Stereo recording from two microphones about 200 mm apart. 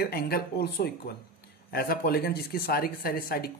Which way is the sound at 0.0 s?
50° left (ahead or behind).